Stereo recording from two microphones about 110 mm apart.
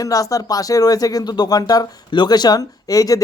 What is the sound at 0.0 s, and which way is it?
Speech, 30° left (ahead or behind).